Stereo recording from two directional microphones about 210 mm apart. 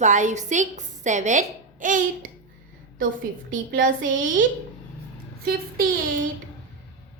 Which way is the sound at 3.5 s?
40° right (ahead or behind).